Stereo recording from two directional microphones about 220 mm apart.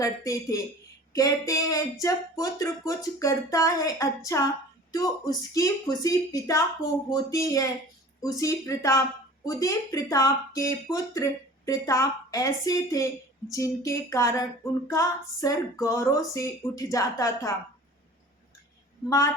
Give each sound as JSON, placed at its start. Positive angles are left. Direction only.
{"t": 0.0, "sound": "speech", "side_deg": 15}
{"t": 19.0, "sound": "speech", "side_deg": 15}